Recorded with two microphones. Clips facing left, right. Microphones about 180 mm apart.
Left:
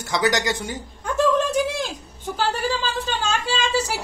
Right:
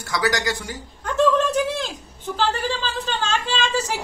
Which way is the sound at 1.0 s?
10° left (ahead or behind).